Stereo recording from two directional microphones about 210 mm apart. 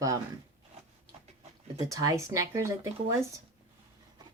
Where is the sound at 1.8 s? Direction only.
15° right (ahead or behind).